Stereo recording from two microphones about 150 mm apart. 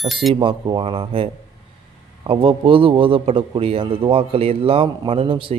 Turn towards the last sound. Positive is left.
turn(degrees=-35)  # may be behind; listen again after turning